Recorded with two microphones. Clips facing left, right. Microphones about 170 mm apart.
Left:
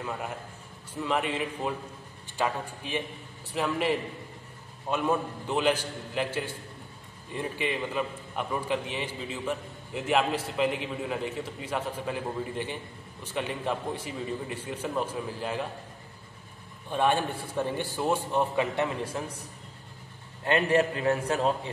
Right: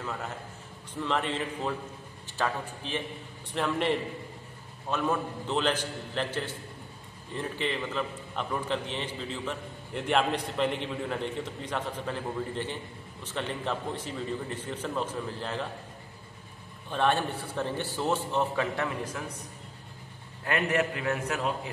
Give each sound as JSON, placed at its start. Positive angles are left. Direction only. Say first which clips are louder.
{"t": 0.9, "sound": "a man's voice", "louder": "left 1 dB", "side_deg": 10}
{"t": 16.9, "sound": "a man's voice", "louder": "left 1 dB", "side_deg": 10}
{"t": 19.2, "sound": "a man's voice", "louder": "left 3 dB", "side_deg": 30}
{"t": 20.4, "sound": "a man's voice", "louder": "left 4 dB", "side_deg": 30}